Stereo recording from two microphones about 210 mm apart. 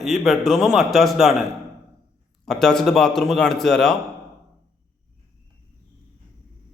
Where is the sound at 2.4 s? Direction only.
Centre (ahead or behind).